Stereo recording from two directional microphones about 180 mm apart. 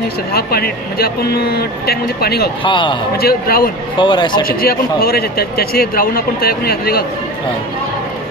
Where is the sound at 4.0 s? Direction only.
25° left (ahead or behind).